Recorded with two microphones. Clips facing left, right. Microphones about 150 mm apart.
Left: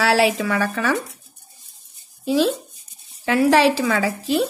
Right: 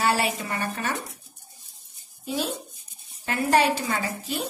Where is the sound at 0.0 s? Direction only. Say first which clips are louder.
Left 7 dB; 90° left.